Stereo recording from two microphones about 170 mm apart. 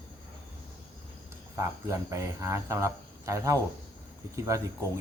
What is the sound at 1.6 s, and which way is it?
Speech, 15° right (ahead or behind).